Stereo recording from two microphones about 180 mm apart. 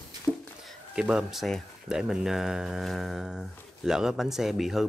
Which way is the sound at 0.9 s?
5° right (ahead or behind).